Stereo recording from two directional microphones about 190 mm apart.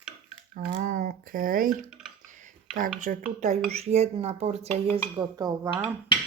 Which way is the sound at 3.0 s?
45° right (ahead or behind).